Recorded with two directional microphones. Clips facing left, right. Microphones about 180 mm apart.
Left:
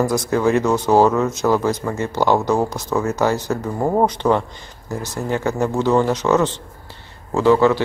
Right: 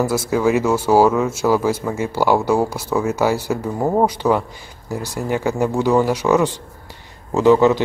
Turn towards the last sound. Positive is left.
turn(degrees=-15)  # may be behind; listen again after turning